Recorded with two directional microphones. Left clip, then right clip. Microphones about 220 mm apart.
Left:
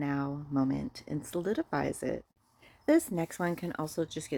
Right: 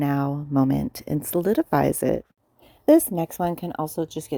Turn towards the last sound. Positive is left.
turn(degrees=-25)  # may be behind; listen again after turning